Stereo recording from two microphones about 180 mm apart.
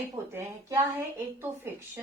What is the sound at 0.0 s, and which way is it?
A woman's voice, 15° right (ahead or behind).